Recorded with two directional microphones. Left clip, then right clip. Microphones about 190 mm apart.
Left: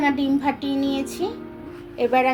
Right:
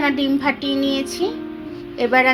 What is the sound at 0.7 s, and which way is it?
Music, 30° right (ahead or behind).